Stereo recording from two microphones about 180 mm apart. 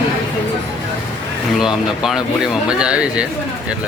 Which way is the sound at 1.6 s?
Centre (ahead or behind).